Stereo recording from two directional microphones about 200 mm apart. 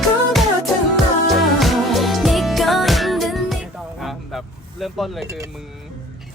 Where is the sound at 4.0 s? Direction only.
Centre (ahead or behind).